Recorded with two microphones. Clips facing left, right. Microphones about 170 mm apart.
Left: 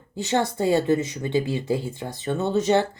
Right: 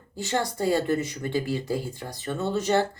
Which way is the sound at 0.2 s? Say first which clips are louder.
Left 4 dB; 20° left (ahead or behind).